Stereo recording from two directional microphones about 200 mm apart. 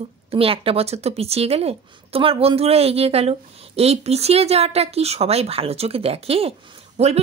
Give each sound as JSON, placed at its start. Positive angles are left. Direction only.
{"t": 0.3, "sound": "speech", "side_deg": -30}